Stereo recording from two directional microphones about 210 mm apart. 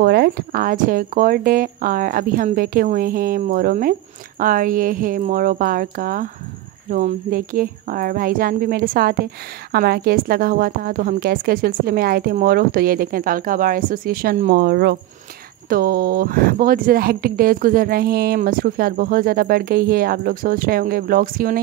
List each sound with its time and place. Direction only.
0.0 s a woman's voice: 50° right (ahead or behind)